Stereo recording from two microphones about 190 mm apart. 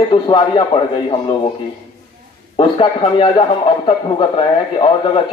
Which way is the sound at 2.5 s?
30° left (ahead or behind).